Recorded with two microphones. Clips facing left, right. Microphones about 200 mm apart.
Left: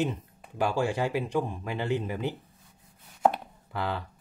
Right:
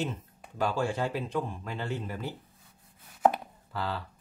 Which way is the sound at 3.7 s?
20° left (ahead or behind).